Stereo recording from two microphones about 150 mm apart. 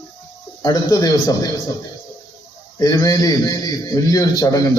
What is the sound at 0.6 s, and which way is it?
Speech, 25° left (ahead or behind).